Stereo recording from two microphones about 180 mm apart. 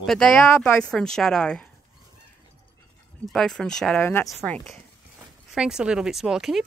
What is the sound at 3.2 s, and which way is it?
Speech, 5° left (ahead or behind).